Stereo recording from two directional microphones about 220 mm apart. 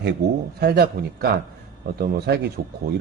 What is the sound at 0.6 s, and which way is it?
Speech, 45° right (ahead or behind).